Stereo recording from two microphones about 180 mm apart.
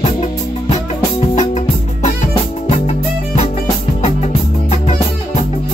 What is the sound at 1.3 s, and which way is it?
Music, 40° left (ahead or behind).